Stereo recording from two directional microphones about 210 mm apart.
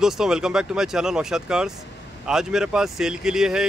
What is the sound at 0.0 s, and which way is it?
Speech, 5° right (ahead or behind).